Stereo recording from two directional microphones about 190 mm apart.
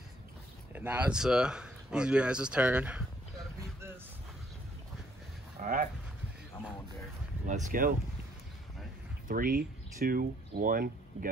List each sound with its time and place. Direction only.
0.7 s speech: 10° right (ahead or behind)
5.6 s speech: 45° right (ahead or behind)
7.4 s speech: 40° right (ahead or behind)
9.3 s speech: 50° right (ahead or behind)